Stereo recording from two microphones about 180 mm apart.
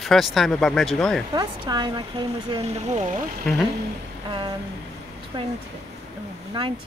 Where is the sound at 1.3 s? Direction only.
25° right (ahead or behind).